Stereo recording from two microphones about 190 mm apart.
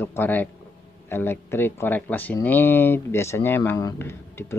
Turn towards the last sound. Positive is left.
turn(degrees=10)  # may be behind; listen again after turning